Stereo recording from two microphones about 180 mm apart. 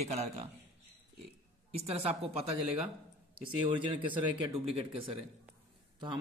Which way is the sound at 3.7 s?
25° right (ahead or behind).